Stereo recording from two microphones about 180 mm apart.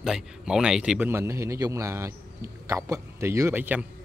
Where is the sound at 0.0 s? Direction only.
5° right (ahead or behind).